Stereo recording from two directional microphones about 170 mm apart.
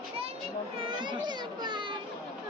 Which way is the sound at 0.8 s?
25° right (ahead or behind).